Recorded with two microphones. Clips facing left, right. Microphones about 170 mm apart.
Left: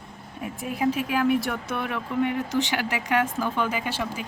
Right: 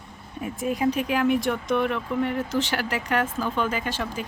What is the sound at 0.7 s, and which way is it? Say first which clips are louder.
Speech: left 1 dB; 5° left (ahead or behind).